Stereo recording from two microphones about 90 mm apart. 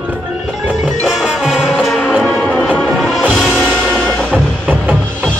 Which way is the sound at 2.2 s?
10° left (ahead or behind).